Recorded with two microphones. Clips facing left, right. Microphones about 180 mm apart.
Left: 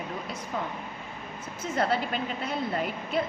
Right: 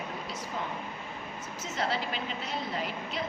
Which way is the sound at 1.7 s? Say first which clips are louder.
Left 5 dB; 50° left (ahead or behind).